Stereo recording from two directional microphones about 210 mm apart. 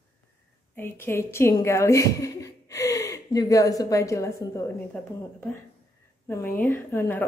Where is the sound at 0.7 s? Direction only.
10° left (ahead or behind).